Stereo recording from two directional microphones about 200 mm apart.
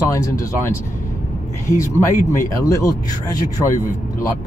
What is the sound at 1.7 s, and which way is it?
Speech, 15° left (ahead or behind).